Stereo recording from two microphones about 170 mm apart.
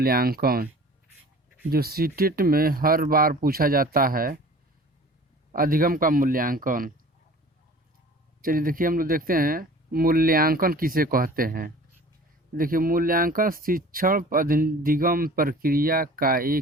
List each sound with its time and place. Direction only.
0.0 s speech: 65° right (ahead or behind)
1.7 s speech: 65° right (ahead or behind)
5.5 s speech: 55° right (ahead or behind)
8.4 s speech: 55° right (ahead or behind)